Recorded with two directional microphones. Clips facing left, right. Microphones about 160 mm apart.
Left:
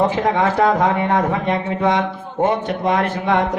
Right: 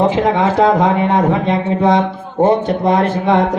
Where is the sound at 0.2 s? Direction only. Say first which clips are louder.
Right 4 dB; 20° right (ahead or behind).